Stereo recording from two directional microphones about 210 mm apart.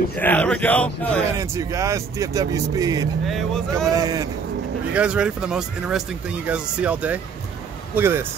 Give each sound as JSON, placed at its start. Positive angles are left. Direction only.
{"t": 0.1, "sound": "a man's voice", "side_deg": 5}
{"t": 1.4, "sound": "speech", "side_deg": -15}
{"t": 4.9, "sound": "speech", "side_deg": -5}